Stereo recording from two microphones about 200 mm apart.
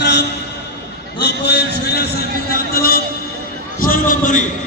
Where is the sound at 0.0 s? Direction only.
60° left (ahead or behind); by 4.4 s 40° left (ahead or behind).